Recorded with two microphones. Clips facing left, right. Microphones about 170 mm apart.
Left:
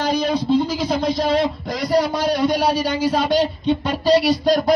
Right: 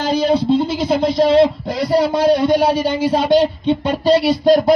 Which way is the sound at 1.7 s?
25° right (ahead or behind).